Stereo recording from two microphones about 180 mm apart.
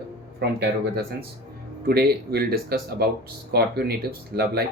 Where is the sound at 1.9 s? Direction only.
60° right (ahead or behind).